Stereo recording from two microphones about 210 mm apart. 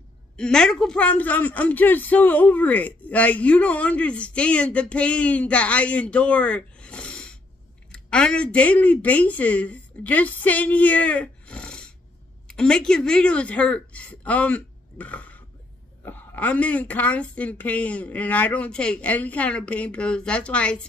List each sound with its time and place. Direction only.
0.4 s a woman's voice: 5° left (ahead or behind)